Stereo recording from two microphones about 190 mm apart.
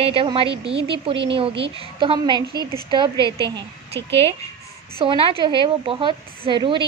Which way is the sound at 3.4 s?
65° right (ahead or behind).